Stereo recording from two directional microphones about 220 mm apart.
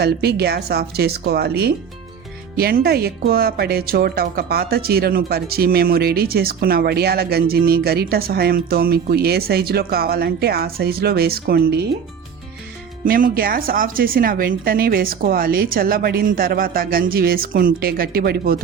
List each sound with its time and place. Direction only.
0.0 s speech: 45° right (ahead or behind)
13.1 s a woman's voice: 40° right (ahead or behind)